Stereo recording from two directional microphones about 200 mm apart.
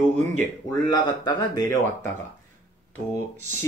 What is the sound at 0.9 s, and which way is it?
Speech, 20° left (ahead or behind).